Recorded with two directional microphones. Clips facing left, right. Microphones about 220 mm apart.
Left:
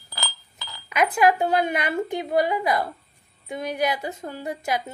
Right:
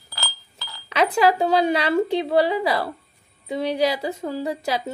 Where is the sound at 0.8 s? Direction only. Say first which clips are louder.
Right 1 dB; 30° right (ahead or behind).